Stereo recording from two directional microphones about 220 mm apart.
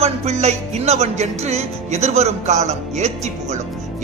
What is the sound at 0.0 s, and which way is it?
Music, 30° right (ahead or behind).